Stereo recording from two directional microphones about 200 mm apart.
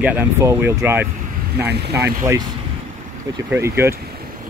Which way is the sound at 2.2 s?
15° right (ahead or behind).